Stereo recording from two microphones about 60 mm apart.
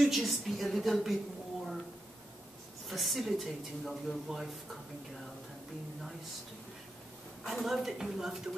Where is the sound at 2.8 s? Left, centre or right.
Centre.